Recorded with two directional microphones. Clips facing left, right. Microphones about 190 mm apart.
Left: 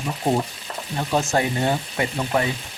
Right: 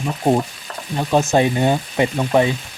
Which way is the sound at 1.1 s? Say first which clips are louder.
Right 6 dB; 20° right (ahead or behind).